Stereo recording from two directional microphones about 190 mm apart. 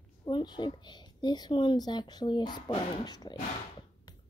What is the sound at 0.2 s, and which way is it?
A woman's voice, 25° left (ahead or behind).